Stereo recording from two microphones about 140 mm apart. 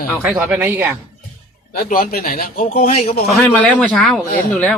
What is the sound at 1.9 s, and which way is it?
Speech, 90° left.